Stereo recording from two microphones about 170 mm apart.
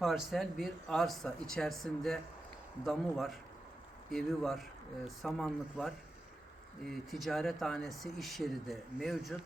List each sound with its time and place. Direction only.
0.0 s speech: centre (ahead or behind)